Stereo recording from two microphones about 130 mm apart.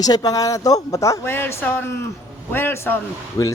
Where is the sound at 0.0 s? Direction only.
30° left (ahead or behind).